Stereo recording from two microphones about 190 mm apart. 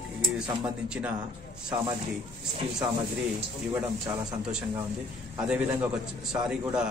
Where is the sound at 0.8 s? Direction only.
5° right (ahead or behind).